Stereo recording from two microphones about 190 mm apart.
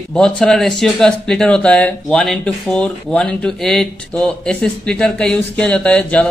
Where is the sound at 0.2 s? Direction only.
5° left (ahead or behind).